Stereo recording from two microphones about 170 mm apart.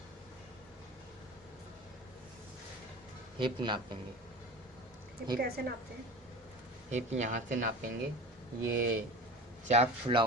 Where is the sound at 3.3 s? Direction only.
30° right (ahead or behind).